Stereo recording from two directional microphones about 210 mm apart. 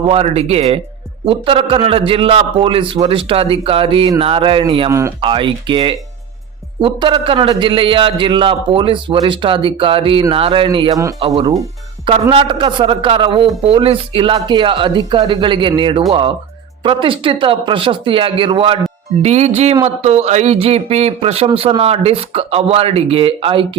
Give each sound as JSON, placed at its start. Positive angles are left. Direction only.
{"t": 0.1, "sound": "a man's voice", "side_deg": -30}